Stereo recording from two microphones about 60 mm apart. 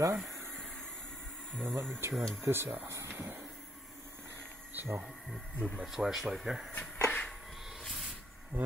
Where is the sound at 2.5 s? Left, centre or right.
Right.